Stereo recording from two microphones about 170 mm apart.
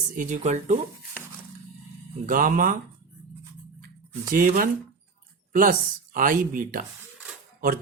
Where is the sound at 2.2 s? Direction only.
55° right (ahead or behind).